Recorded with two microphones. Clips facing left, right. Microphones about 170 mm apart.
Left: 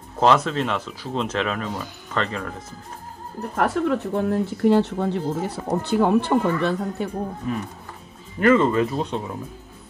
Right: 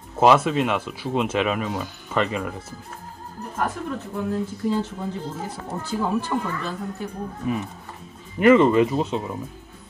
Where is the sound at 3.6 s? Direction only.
75° left (ahead or behind).